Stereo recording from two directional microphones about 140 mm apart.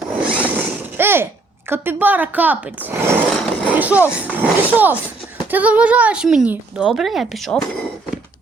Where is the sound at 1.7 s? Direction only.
15° right (ahead or behind).